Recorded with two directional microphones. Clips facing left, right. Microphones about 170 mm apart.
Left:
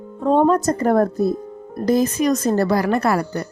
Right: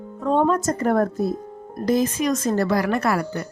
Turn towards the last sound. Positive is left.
turn(degrees=35)  # may be behind; listen again after turning